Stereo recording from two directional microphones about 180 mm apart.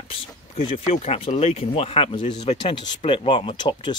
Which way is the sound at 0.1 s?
35° left (ahead or behind).